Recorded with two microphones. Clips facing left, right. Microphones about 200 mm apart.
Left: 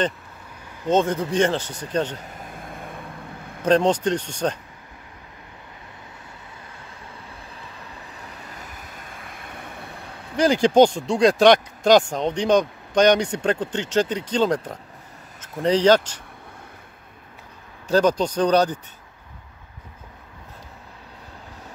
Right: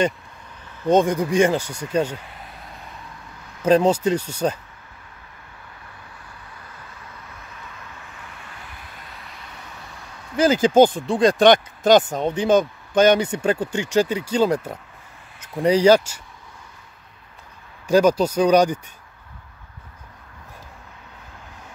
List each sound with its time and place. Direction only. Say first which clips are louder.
0.8 s speech: right 3 dB; 15° right (ahead or behind)
2.1 s vehicle: left 2 dB; 45° left (ahead or behind)
3.6 s speech: right 2 dB; 5° right (ahead or behind)
7.3 s vehicle: left 1 dB; 35° left (ahead or behind); by 10.0 s 55° left (ahead or behind)
10.3 s speech: right 1 dB; 5° right (ahead or behind)
17.8 s speech: right 3 dB; 10° right (ahead or behind)